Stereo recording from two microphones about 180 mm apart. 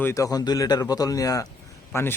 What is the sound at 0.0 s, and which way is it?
Speech, 15° left (ahead or behind).